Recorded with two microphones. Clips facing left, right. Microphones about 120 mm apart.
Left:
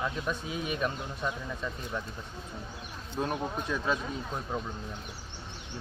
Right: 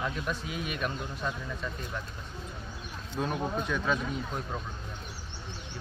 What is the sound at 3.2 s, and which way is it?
Speech, 25° left (ahead or behind).